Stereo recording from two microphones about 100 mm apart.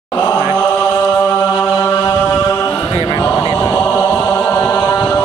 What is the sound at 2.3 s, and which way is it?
A capella, 20° left (ahead or behind).